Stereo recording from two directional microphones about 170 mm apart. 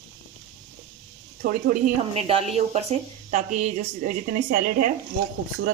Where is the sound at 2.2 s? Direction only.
35° right (ahead or behind).